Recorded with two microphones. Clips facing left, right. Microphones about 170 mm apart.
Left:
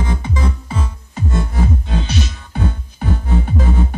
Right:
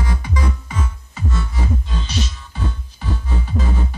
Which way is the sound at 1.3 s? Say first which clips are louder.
Left 6 dB; 50° left (ahead or behind).